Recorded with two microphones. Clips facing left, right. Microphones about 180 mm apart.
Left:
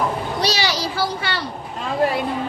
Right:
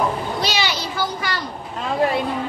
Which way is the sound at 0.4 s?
35° left (ahead or behind).